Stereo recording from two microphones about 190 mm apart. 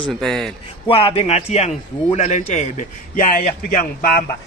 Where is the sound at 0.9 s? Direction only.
30° left (ahead or behind); by 4.2 s 50° left (ahead or behind).